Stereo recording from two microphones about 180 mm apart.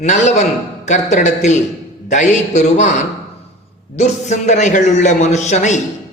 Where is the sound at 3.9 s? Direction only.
40° left (ahead or behind).